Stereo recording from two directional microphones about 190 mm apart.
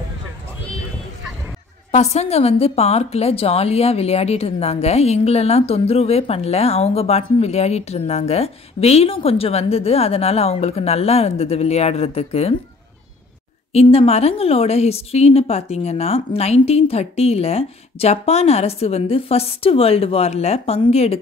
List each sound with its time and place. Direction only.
1.9 s a woman's voice: 35° left (ahead or behind)
13.7 s a woman's voice: 30° left (ahead or behind)